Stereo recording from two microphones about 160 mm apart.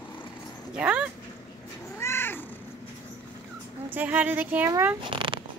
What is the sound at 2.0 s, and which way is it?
Cat, 15° left (ahead or behind).